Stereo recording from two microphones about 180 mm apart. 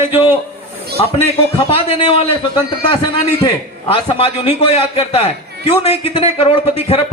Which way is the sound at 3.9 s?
30° left (ahead or behind).